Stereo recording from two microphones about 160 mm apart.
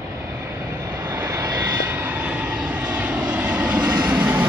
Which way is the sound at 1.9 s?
10° right (ahead or behind).